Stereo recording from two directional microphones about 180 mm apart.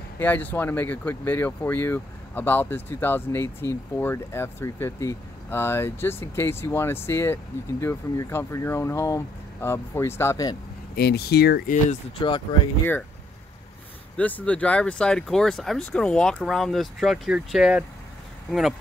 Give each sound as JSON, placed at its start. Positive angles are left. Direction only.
{"t": 0.2, "sound": "speech", "side_deg": 10}
{"t": 11.0, "sound": "speech", "side_deg": 60}
{"t": 14.1, "sound": "speech", "side_deg": 10}